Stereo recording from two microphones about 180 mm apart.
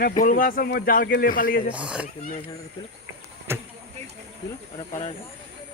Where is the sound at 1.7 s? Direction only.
5° right (ahead or behind).